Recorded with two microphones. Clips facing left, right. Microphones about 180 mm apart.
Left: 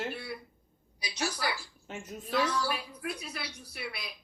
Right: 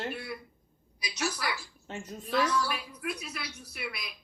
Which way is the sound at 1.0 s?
30° left (ahead or behind).